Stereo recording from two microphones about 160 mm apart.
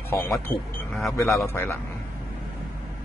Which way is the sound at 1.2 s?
20° left (ahead or behind).